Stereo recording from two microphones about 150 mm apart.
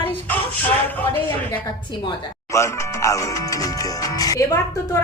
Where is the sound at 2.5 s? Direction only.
20° left (ahead or behind).